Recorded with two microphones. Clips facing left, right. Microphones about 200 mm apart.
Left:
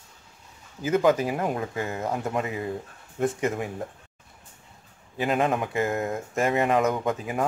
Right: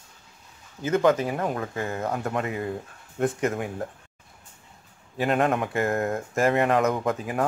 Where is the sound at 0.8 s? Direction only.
10° left (ahead or behind).